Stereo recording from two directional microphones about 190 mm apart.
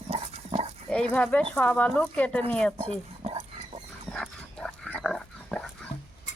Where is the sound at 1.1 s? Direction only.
5° left (ahead or behind).